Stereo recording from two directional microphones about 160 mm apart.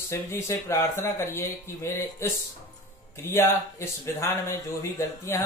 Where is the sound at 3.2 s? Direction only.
15° left (ahead or behind).